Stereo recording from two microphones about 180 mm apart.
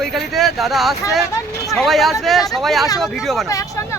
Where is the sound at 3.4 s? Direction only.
20° left (ahead or behind).